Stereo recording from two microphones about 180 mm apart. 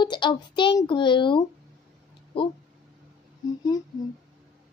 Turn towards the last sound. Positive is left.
turn(degrees=20)  # may be behind; listen again after turning